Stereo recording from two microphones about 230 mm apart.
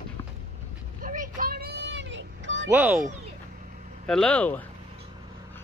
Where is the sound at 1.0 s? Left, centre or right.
Right.